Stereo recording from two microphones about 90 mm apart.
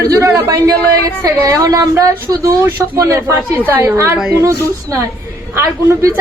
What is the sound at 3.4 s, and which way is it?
Speech, 20° right (ahead or behind).